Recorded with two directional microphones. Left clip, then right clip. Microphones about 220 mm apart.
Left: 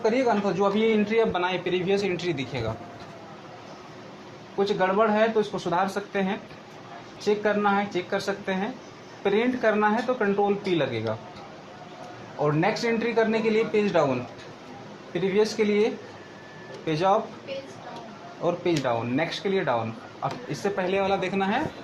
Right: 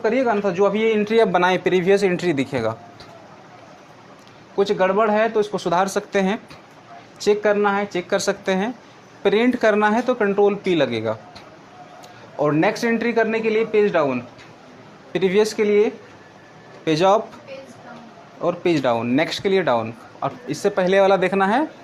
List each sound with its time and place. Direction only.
0.0 s a man's voice: 40° right (ahead or behind)
4.5 s a man's voice: 55° right (ahead or behind)
12.4 s speech: 55° right (ahead or behind)
13.5 s speech: 35° right (ahead or behind)
15.1 s a man's voice: 55° right (ahead or behind)
15.6 s speech: 40° right (ahead or behind)
16.8 s a man's voice: 55° right (ahead or behind)
18.4 s a man's voice: 50° right (ahead or behind)